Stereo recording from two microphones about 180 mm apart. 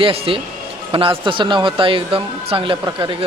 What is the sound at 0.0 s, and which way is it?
Speech, 30° right (ahead or behind).